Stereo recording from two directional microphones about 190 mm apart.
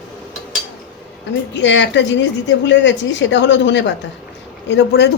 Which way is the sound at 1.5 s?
70° left (ahead or behind).